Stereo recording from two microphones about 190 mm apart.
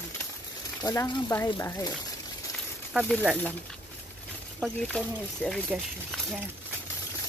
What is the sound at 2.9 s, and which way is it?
Speech, 5° right (ahead or behind).